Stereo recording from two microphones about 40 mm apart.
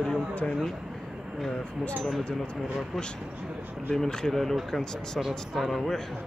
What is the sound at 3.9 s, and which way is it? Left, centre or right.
Speech, centre.